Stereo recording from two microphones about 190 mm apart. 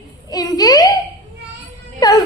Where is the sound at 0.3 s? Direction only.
20° left (ahead or behind).